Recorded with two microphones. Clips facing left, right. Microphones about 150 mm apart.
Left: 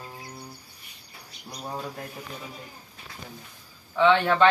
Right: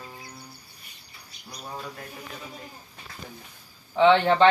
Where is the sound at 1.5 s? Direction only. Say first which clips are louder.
Left 3 dB; 20° left (ahead or behind).